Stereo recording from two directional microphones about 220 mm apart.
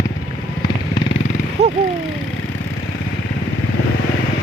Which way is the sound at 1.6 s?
30° right (ahead or behind).